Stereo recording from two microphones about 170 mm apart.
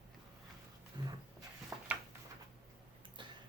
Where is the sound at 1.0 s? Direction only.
25° right (ahead or behind).